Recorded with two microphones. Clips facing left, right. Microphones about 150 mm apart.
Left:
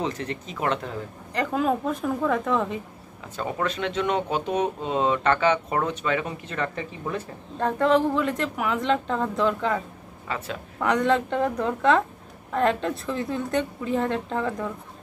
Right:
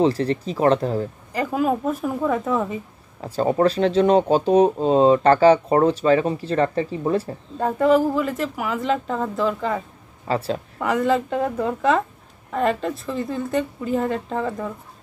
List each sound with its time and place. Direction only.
0.0 s speech: 35° right (ahead or behind)
1.3 s a woman's voice: 5° right (ahead or behind)
3.2 s speech: 35° right (ahead or behind)
7.5 s a woman's voice: 10° right (ahead or behind)
10.2 s speech: 35° right (ahead or behind)
10.8 s a woman's voice: 5° right (ahead or behind)